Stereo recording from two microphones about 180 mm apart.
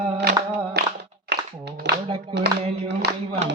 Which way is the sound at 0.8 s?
65° right (ahead or behind).